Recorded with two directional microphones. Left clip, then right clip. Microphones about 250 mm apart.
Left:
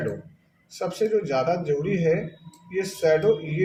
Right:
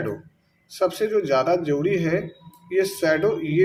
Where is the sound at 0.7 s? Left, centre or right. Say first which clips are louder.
Right 2 dB; right.